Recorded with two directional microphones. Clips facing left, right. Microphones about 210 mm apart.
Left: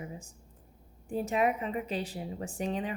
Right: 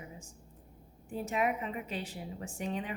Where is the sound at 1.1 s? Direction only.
35° left (ahead or behind).